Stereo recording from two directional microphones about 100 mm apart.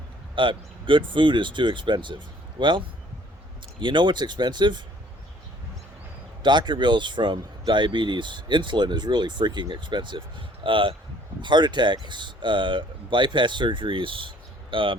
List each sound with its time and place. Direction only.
0.3 s speech: 55° right (ahead or behind)
6.4 s speech: 50° right (ahead or behind)